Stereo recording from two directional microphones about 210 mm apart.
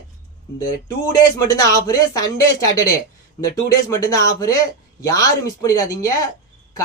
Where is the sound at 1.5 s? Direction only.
15° left (ahead or behind).